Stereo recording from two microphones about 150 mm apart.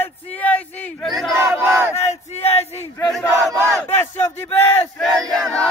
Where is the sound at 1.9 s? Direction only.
45° left (ahead or behind).